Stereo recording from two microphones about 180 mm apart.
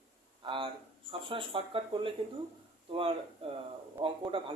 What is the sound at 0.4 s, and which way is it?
Speech, 25° right (ahead or behind).